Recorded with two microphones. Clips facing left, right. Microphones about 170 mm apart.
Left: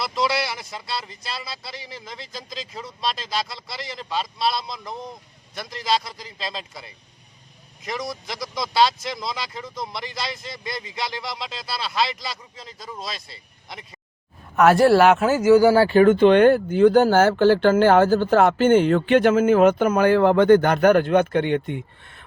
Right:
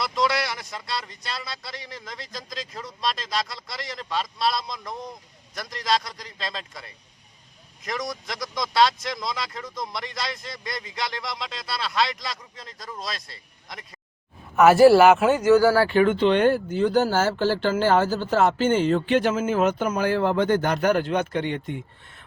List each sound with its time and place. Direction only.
0.0 s speech: centre (ahead or behind)
15.7 s speech: 30° left (ahead or behind); by 22.2 s 60° left (ahead or behind)